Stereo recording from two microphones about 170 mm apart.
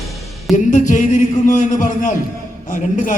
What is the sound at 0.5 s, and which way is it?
A man's voice, 45° left (ahead or behind).